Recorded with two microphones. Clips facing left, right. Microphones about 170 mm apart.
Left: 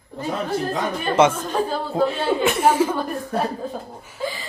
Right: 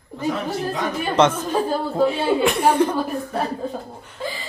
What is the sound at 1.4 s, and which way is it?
Speech, 10° right (ahead or behind).